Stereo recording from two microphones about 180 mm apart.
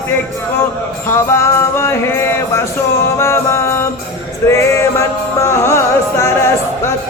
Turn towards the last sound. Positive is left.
turn(degrees=15)  # may be behind; listen again after turning